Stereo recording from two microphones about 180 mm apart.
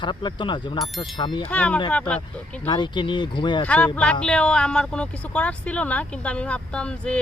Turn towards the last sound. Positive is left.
turn(degrees=5)  # may be behind; listen again after turning